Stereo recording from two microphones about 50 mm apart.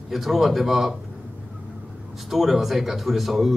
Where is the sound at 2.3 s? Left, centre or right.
Centre.